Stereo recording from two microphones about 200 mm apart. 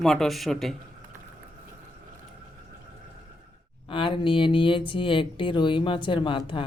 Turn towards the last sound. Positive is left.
turn(degrees=25)  # may be behind; listen again after turning